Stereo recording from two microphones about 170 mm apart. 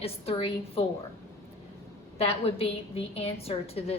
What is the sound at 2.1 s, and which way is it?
A woman's voice, 35° left (ahead or behind).